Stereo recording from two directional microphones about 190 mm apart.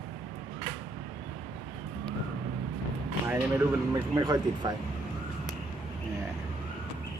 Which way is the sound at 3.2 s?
15° right (ahead or behind).